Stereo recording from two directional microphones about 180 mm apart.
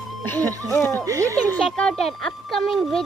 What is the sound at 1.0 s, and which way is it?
Speech, 20° right (ahead or behind).